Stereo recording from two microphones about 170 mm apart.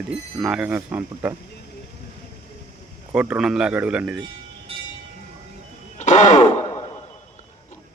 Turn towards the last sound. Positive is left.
turn(degrees=45)  # may be behind; listen again after turning